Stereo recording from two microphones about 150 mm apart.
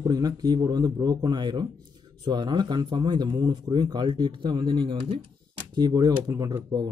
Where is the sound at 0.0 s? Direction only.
25° right (ahead or behind).